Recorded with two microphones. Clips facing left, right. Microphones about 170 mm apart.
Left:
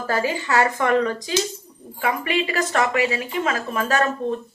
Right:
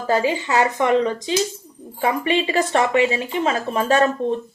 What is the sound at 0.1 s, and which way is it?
A woman's voice, 20° right (ahead or behind).